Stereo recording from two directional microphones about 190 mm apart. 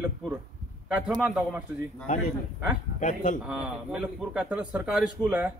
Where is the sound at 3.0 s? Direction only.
40° left (ahead or behind).